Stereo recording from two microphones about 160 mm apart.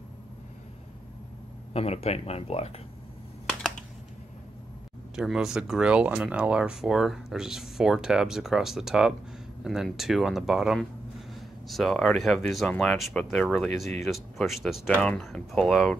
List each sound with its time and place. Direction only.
1.7 s speech: 40° left (ahead or behind)
5.1 s speech: 5° right (ahead or behind)